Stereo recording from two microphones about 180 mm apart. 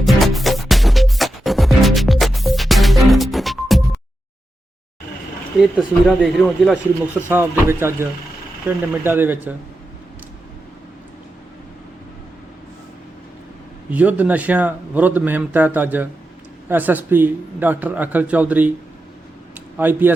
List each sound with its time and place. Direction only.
0.0 s music: centre (ahead or behind)
5.5 s a man's voice: 5° right (ahead or behind)
9.0 s a man's voice: 10° right (ahead or behind)
13.9 s a man's voice: 10° right (ahead or behind)
19.7 s a man's voice: 10° right (ahead or behind)